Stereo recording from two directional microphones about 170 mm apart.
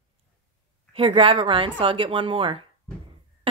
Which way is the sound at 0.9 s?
30° right (ahead or behind).